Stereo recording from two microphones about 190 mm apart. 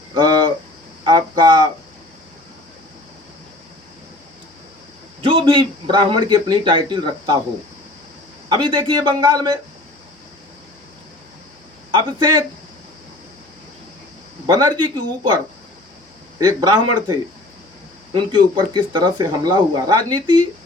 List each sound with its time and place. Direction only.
0.1 s a sound: 20° right (ahead or behind)
1.0 s speech: 20° right (ahead or behind)
5.2 s a man's voice: 25° right (ahead or behind)
8.4 s a man's voice: 25° right (ahead or behind)
11.9 s a man's voice: 25° right (ahead or behind)
14.4 s a man's voice: 20° right (ahead or behind)
16.4 s a man's voice: 20° right (ahead or behind)
18.1 s a man's voice: 25° right (ahead or behind)